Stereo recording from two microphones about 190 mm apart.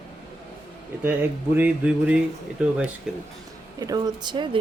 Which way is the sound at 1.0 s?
10° right (ahead or behind).